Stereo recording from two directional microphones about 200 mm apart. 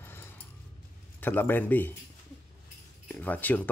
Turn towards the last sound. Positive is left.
turn(degrees=10)  # may be behind; listen again after turning